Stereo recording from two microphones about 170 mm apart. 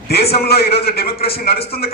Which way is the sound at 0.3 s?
65° left (ahead or behind).